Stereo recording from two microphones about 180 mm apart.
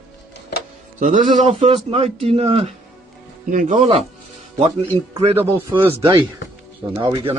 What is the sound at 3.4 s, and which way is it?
Speech, 45° right (ahead or behind).